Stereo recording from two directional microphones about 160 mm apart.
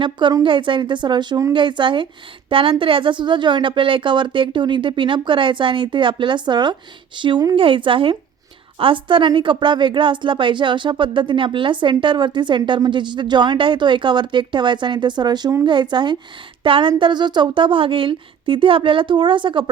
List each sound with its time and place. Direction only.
0.0 s a woman's voice: 30° right (ahead or behind)